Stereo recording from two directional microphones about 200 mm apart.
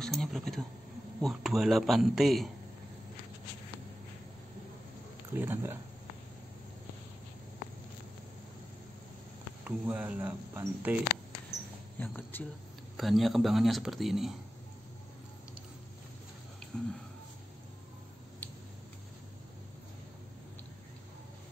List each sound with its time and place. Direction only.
0.0 s speech: centre (ahead or behind)
5.3 s speech: 10° right (ahead or behind)
9.7 s speech: 10° right (ahead or behind)
12.0 s speech: 10° left (ahead or behind)